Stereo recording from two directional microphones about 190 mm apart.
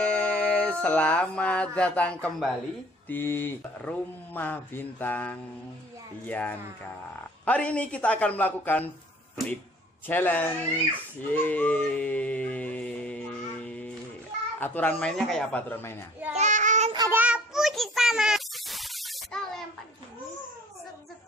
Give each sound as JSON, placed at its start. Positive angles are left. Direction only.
{"t": 0.0, "sound": "a sound", "side_deg": 5}
{"t": 3.1, "sound": "speech", "side_deg": 10}
{"t": 10.0, "sound": "speech", "side_deg": 10}
{"t": 11.3, "sound": "music", "side_deg": 10}
{"t": 14.6, "sound": "speech", "side_deg": 10}
{"t": 16.3, "sound": "child singing", "side_deg": -40}
{"t": 16.9, "sound": "child singing", "side_deg": -20}
{"t": 17.2, "sound": "child singing", "side_deg": -5}